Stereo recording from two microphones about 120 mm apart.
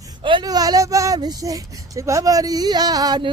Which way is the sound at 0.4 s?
30° right (ahead or behind).